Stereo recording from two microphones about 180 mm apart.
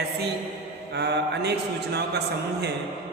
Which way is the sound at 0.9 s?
65° right (ahead or behind).